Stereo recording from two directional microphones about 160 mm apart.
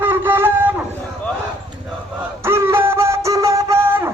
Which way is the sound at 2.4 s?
15° right (ahead or behind).